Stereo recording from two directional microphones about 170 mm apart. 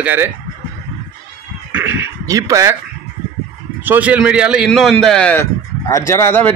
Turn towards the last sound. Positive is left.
turn(degrees=15)  # may be behind; listen again after turning